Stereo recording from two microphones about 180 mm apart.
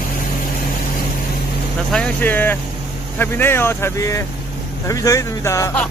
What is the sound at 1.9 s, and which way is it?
Speech, 10° left (ahead or behind).